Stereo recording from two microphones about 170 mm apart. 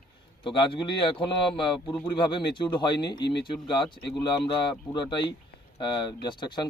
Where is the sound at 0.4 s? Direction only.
30° left (ahead or behind).